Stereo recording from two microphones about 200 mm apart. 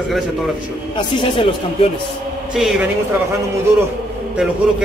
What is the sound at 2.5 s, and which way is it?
Speech, 5° right (ahead or behind).